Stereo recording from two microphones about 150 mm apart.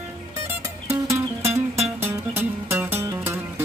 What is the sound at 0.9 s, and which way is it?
Music, 20° right (ahead or behind).